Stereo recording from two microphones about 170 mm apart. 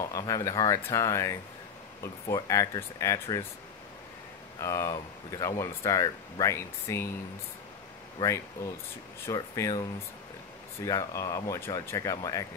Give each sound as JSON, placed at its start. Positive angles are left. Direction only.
{"t": 0.0, "sound": "speech", "side_deg": 20}
{"t": 4.6, "sound": "speech", "side_deg": 20}
{"t": 9.2, "sound": "speech", "side_deg": 20}